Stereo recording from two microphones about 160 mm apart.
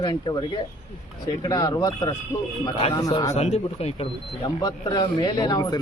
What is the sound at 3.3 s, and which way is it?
Speech, 45° left (ahead or behind).